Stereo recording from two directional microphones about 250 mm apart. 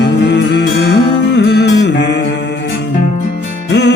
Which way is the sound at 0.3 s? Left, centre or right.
Left.